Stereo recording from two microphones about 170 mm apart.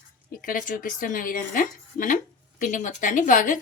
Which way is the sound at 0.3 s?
55° left (ahead or behind).